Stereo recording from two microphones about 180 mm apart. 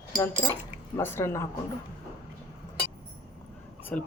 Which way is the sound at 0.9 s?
15° left (ahead or behind).